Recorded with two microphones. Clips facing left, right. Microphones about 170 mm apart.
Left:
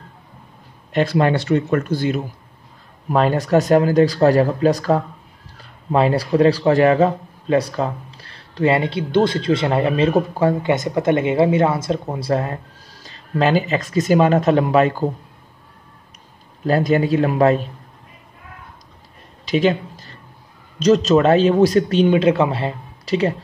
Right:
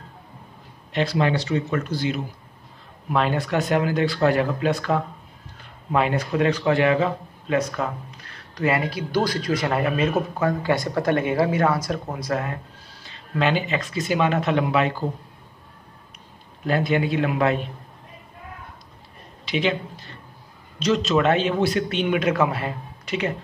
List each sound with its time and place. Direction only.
0.9 s speech: 50° left (ahead or behind)
16.6 s speech: 40° left (ahead or behind)
19.4 s a sound: 40° left (ahead or behind)
20.8 s speech: 40° left (ahead or behind)